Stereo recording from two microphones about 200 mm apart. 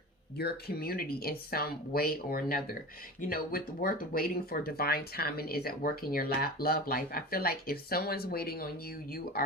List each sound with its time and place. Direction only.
0.3 s speech: 50° left (ahead or behind)